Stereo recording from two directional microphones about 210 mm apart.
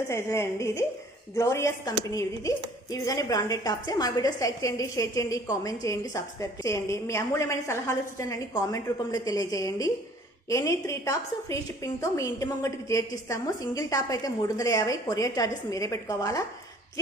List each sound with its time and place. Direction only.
0.1 s a woman's voice: 15° left (ahead or behind)